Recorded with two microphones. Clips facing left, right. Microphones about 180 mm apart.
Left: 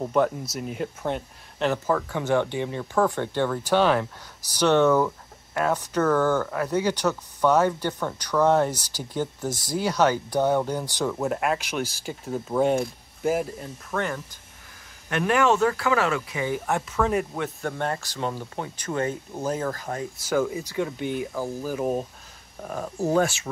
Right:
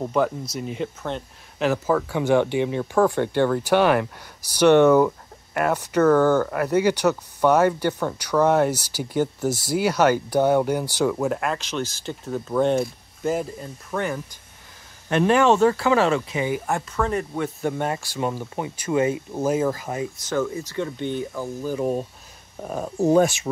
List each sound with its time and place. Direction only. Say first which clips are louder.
0.0 s speech: even; centre (ahead or behind)
1.6 s speech: right 3 dB; 5° right (ahead or behind)
11.1 s speech: right 1 dB; 5° left (ahead or behind)
13.8 s speech: right 2 dB; 5° right (ahead or behind)
15.0 s speech: right 4 dB; 30° right (ahead or behind)
16.6 s speech: even; 5° left (ahead or behind)
17.6 s speech: right 3 dB; 10° right (ahead or behind)
20.2 s speech: left 2 dB; 10° left (ahead or behind)
22.6 s speech: right 4 dB; 20° right (ahead or behind)